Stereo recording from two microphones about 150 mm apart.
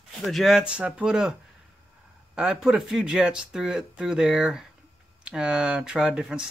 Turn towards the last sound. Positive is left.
turn(degrees=-5)  # may be behind; listen again after turning